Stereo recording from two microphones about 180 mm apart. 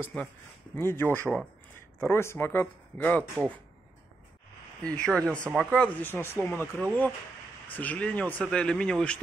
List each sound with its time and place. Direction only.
0.1 s speech: 10° left (ahead or behind)
4.9 s speech: 5° left (ahead or behind)